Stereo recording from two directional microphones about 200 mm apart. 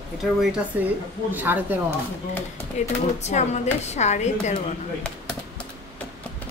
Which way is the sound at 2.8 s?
35° left (ahead or behind).